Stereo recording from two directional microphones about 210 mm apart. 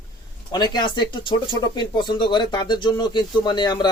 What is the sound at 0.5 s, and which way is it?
Speech, 20° left (ahead or behind).